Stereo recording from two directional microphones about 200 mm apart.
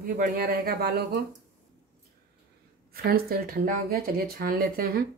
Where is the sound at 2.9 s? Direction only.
50° right (ahead or behind).